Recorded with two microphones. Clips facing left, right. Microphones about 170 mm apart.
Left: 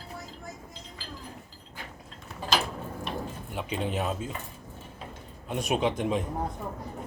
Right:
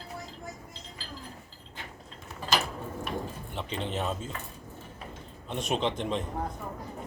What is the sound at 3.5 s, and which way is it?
Speech, 10° left (ahead or behind).